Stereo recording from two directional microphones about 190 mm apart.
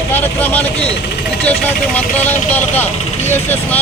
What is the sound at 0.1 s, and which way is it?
Speech, 10° left (ahead or behind).